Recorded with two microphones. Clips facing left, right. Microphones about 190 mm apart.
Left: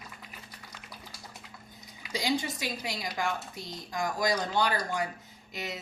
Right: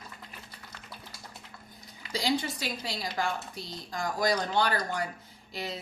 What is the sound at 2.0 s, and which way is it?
Speech, 15° left (ahead or behind).